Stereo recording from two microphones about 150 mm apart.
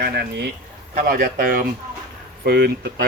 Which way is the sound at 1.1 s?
65° right (ahead or behind).